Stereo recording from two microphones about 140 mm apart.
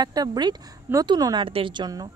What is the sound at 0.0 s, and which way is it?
Speech, 30° right (ahead or behind).